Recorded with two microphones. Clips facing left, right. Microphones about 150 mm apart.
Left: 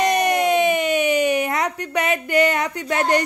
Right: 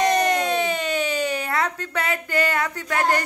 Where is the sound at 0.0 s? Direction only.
15° left (ahead or behind).